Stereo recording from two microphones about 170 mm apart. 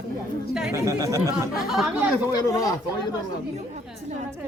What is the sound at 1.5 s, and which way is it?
Speech, centre (ahead or behind).